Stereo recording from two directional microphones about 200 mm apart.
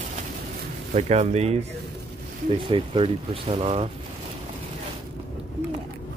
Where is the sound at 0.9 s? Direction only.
35° right (ahead or behind).